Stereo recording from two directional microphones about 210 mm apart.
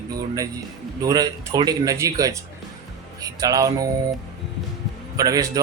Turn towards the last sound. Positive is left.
turn(degrees=-15)  # may be behind; listen again after turning